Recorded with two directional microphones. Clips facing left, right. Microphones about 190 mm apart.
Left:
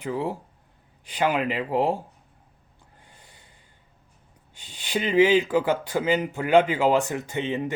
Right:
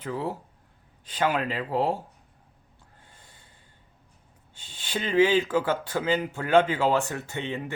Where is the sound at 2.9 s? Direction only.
15° left (ahead or behind).